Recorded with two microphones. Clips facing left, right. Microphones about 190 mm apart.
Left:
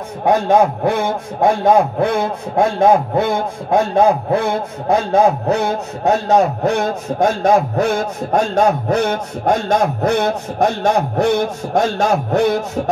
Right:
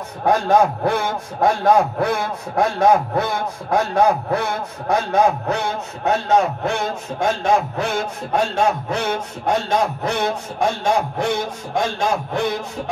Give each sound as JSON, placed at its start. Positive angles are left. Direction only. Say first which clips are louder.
{"t": 0.2, "sound": "a man's voice", "louder": "left 3 dB", "side_deg": 15}